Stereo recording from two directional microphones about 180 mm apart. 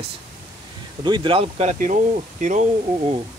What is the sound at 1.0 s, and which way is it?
Speech, 25° right (ahead or behind).